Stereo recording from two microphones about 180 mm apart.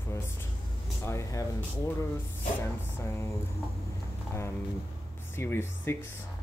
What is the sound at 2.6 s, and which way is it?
Speech, 15° left (ahead or behind).